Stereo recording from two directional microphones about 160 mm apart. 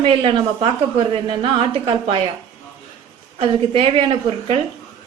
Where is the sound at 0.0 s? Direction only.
35° right (ahead or behind).